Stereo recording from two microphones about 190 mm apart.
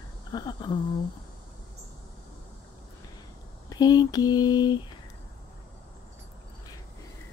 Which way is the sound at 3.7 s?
20° left (ahead or behind).